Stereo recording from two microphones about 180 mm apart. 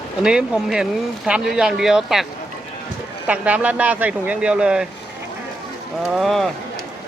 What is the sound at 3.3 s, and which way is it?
Speech, 5° right (ahead or behind).